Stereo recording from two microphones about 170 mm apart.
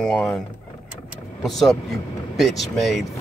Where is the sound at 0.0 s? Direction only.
5° left (ahead or behind).